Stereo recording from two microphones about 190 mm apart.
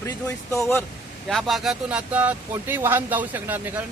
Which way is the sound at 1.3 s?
Centre (ahead or behind).